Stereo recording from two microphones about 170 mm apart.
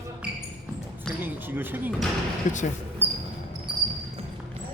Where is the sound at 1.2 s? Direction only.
10° right (ahead or behind).